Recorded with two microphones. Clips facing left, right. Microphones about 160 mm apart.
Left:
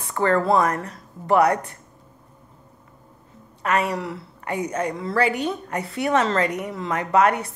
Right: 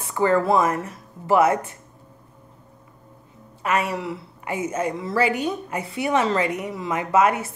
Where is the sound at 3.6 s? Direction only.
Centre (ahead or behind).